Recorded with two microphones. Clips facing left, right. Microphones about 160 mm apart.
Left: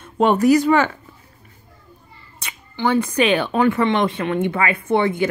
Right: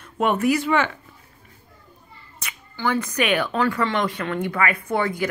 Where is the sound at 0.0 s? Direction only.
30° left (ahead or behind).